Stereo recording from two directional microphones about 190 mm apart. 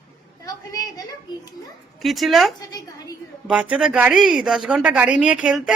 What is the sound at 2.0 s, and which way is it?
Speech, centre (ahead or behind).